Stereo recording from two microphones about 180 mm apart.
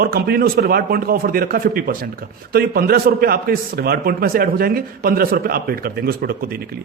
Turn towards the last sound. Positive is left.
turn(degrees=-60)  # may be behind; listen again after turning